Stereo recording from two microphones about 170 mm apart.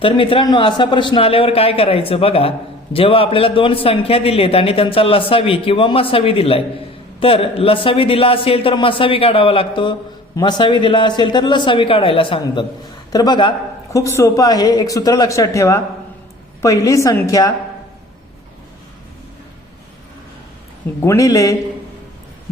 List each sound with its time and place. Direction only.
0.0 s a man's voice: 30° left (ahead or behind)
21.0 s speech: 15° left (ahead or behind)